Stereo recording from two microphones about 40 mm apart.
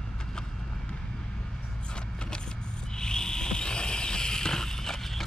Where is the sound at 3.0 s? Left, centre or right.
Centre.